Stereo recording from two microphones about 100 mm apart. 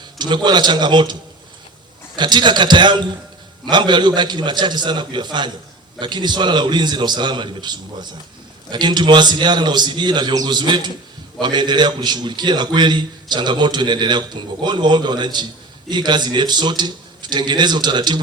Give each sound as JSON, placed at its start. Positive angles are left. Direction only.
{"t": 0.2, "sound": "a man's voice", "side_deg": -45}
{"t": 2.1, "sound": "a man's voice", "side_deg": -50}